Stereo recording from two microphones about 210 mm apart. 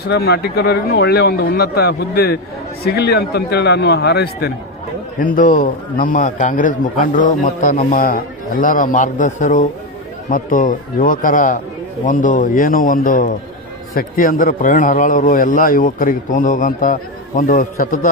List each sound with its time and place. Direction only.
0.0 s speech: 50° left (ahead or behind)
5.2 s a man's voice: 40° left (ahead or behind)